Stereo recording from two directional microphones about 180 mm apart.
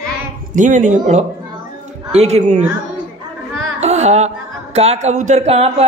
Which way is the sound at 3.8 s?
35° right (ahead or behind).